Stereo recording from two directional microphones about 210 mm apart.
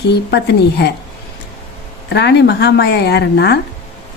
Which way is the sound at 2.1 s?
55° left (ahead or behind).